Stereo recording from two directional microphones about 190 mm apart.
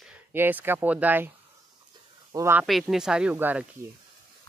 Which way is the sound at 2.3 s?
15° right (ahead or behind).